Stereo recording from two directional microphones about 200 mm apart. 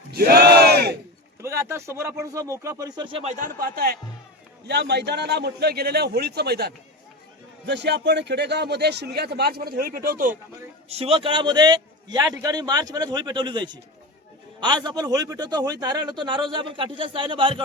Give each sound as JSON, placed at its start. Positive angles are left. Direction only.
{"t": 0.1, "sound": "battle cry", "side_deg": -50}
{"t": 1.4, "sound": "speech", "side_deg": -15}
{"t": 3.3, "sound": "a man's voice", "side_deg": -45}
{"t": 10.8, "sound": "a man's voice", "side_deg": -30}